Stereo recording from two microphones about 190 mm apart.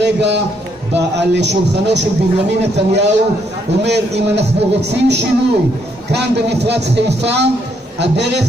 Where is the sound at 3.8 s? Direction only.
65° right (ahead or behind).